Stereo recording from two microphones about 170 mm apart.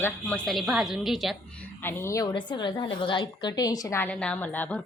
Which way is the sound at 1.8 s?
15° left (ahead or behind).